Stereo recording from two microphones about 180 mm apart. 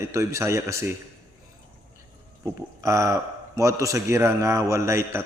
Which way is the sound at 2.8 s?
15° right (ahead or behind).